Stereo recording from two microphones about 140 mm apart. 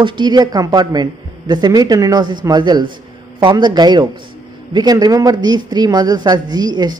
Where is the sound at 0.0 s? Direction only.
35° right (ahead or behind).